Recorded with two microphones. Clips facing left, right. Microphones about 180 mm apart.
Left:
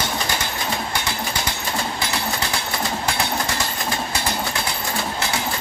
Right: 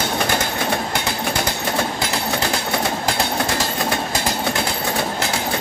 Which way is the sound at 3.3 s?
60° right (ahead or behind).